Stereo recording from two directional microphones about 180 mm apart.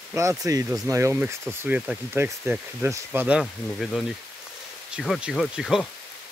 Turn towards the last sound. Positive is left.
turn(degrees=0)  # may be behind; listen again after turning